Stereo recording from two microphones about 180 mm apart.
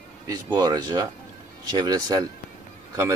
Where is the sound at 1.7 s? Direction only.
20° right (ahead or behind).